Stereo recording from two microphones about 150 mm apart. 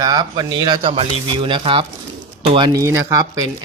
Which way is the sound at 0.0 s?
25° right (ahead or behind).